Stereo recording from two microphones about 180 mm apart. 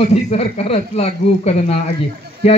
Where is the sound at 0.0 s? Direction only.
35° left (ahead or behind).